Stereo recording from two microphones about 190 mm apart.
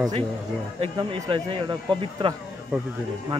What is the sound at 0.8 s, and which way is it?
Speech, 25° right (ahead or behind).